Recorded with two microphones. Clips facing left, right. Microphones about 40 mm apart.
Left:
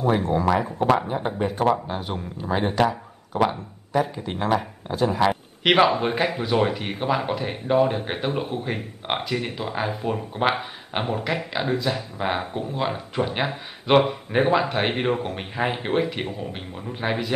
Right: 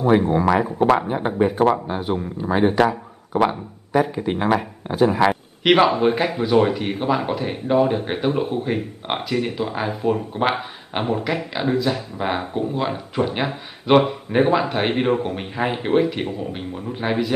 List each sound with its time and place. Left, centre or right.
0.6 s speech: centre
4.0 s speech: centre
5.3 s speech: centre